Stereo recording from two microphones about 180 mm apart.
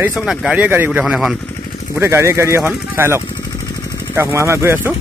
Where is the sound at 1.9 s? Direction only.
15° right (ahead or behind).